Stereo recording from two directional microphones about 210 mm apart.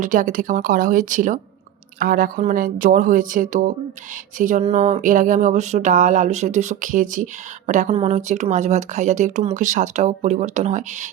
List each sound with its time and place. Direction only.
0.0 s speech: 40° right (ahead or behind)